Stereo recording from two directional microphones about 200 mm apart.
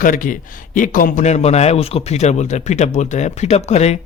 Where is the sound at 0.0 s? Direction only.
40° left (ahead or behind).